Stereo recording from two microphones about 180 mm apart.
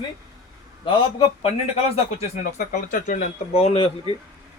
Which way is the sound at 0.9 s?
30° left (ahead or behind).